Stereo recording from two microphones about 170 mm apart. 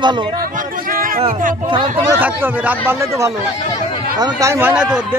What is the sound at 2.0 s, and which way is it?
A man's voice, 10° right (ahead or behind).